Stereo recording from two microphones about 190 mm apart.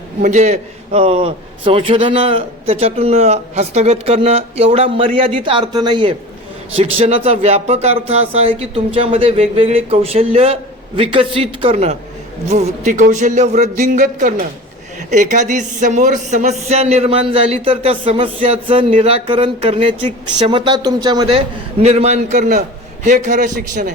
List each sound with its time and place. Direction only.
0.2 s a man's voice: 40° right (ahead or behind)